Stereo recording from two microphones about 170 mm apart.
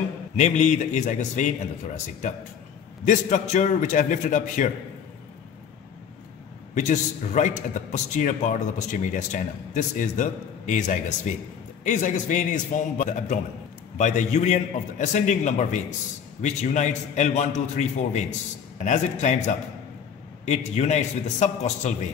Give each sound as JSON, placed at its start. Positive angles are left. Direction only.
{"t": 0.4, "sound": "a man's voice", "side_deg": 45}
{"t": 6.7, "sound": "a man's voice", "side_deg": 45}